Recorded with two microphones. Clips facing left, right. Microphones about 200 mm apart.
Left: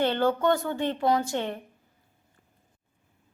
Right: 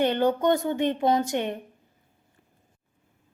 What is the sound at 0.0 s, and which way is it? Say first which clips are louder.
A woman's voice: right 2 dB; 15° right (ahead or behind).